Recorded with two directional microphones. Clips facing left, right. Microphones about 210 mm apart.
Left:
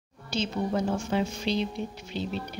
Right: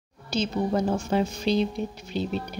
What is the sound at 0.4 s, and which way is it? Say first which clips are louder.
Speech: right 3 dB; 40° right (ahead or behind).